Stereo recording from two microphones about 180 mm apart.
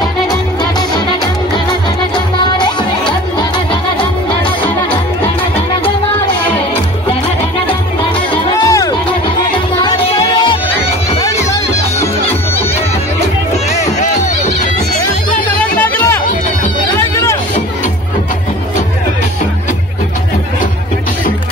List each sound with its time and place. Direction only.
0.3 s music: 25° left (ahead or behind)
8.6 s music: 20° left (ahead or behind)